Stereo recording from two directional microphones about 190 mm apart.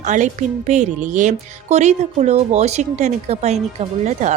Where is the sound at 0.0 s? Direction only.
40° right (ahead or behind).